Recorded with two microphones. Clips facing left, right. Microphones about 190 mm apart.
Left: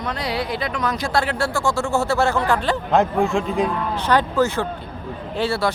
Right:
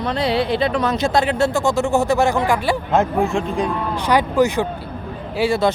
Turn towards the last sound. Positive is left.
turn(degrees=-15)  # may be behind; listen again after turning